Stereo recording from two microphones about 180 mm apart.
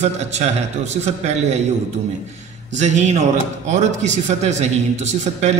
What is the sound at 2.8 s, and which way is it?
A man's voice, 40° right (ahead or behind).